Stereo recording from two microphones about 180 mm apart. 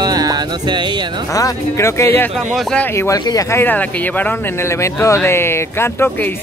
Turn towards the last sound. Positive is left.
turn(degrees=15)  # may be behind; listen again after turning